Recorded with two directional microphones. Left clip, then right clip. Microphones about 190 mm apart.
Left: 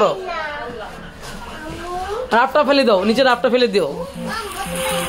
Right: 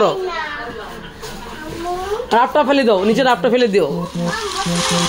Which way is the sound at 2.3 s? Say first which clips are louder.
Right 1 dB; centre (ahead or behind).